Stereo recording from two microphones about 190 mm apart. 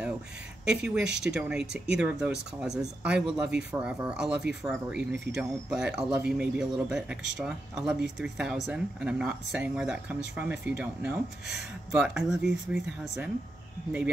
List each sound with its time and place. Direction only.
0.7 s speech: 5° right (ahead or behind)